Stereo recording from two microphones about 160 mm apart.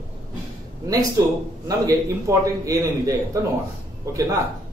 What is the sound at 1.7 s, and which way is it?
A man's voice, 20° right (ahead or behind).